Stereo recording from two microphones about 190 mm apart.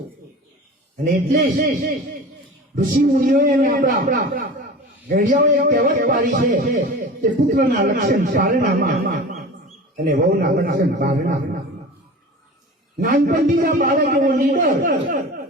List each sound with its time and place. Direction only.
1.0 s speech: 50° right (ahead or behind)
2.7 s speech: 45° right (ahead or behind)
13.0 s speech: 50° right (ahead or behind)